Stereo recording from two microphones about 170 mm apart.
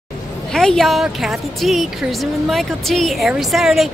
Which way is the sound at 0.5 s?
5° left (ahead or behind).